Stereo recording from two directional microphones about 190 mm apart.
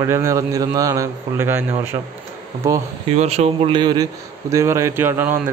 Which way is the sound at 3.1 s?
35° right (ahead or behind).